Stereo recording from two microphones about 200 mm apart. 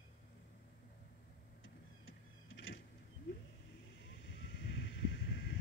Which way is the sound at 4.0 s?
65° left (ahead or behind).